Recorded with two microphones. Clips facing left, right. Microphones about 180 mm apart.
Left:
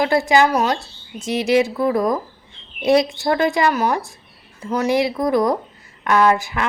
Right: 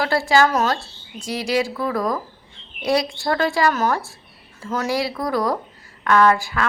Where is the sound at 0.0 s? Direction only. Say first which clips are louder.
Left 2 dB; 20° left (ahead or behind).